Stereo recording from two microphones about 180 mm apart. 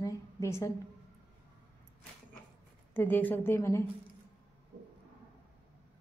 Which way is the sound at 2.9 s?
10° left (ahead or behind).